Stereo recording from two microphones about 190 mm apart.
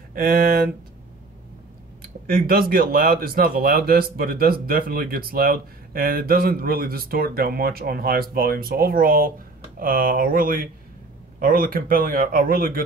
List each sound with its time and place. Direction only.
0.1 s speech: 50° right (ahead or behind)
2.0 s speech: 50° right (ahead or behind)